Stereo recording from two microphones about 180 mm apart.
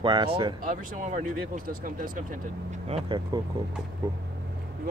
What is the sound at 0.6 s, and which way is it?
Speech, 50° right (ahead or behind).